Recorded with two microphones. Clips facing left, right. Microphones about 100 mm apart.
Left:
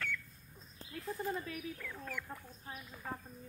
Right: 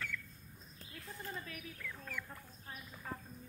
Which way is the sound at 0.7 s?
35° left (ahead or behind).